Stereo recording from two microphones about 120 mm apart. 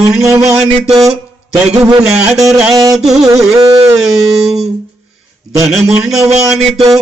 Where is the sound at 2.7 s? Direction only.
30° right (ahead or behind).